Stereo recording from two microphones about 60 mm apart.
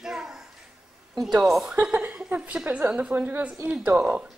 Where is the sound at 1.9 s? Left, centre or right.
Right.